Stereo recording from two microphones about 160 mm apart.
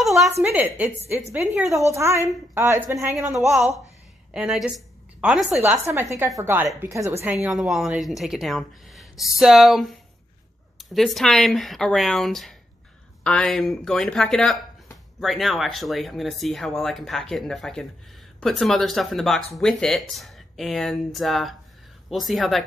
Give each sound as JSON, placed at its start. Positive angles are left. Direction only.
{"t": 0.0, "sound": "a sound", "side_deg": 0}
{"t": 0.4, "sound": "a woman's voice", "side_deg": -10}
{"t": 3.3, "sound": "a woman's voice", "side_deg": 0}
{"t": 7.4, "sound": "speech", "side_deg": 0}